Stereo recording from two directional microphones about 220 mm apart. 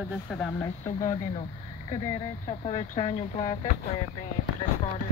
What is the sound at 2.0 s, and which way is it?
Speech, 25° left (ahead or behind).